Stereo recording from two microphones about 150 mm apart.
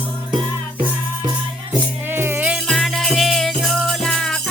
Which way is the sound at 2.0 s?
15° right (ahead or behind).